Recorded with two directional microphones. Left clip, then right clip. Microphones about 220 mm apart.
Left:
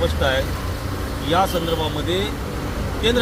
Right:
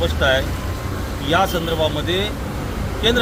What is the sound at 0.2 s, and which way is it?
Speech, 5° right (ahead or behind).